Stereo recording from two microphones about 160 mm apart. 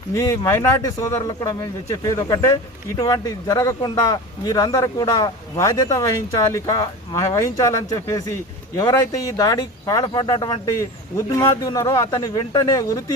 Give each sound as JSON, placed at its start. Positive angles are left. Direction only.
{"t": 0.1, "sound": "speech", "side_deg": 20}